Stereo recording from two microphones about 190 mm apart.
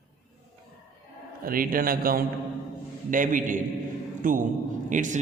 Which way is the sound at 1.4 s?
50° right (ahead or behind).